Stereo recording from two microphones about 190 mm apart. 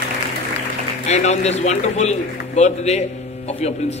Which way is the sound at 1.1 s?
35° left (ahead or behind).